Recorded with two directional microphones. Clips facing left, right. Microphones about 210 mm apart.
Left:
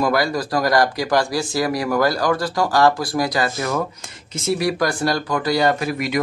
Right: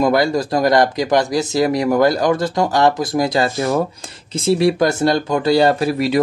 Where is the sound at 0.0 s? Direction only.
25° right (ahead or behind).